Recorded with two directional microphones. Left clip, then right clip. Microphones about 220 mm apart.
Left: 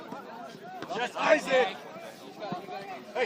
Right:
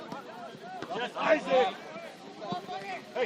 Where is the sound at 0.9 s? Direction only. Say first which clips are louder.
Left 2 dB; 35° left (ahead or behind).